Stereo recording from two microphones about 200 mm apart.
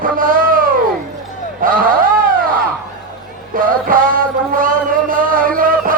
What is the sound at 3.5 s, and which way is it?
Music, 45° right (ahead or behind).